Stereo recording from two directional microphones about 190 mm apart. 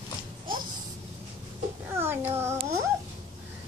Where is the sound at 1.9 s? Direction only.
10° right (ahead or behind).